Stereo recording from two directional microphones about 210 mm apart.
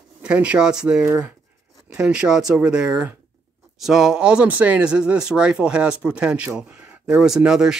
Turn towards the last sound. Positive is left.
turn(degrees=-5)  # may be behind; listen again after turning